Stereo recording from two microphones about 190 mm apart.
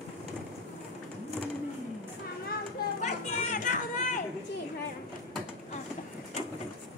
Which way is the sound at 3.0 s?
40° left (ahead or behind).